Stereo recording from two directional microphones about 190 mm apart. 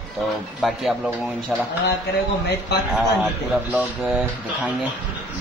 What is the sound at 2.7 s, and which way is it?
Speech, 60° left (ahead or behind).